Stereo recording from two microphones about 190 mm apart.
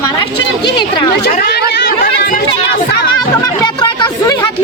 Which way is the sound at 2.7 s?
60° left (ahead or behind).